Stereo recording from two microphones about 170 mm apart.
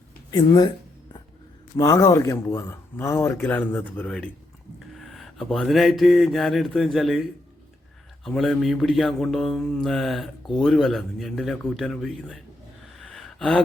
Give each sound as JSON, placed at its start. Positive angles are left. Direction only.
{"t": 0.3, "sound": "speech", "side_deg": 25}
{"t": 1.7, "sound": "speech", "side_deg": 20}
{"t": 4.9, "sound": "mantra", "side_deg": 0}
{"t": 13.0, "sound": "gasp", "side_deg": 5}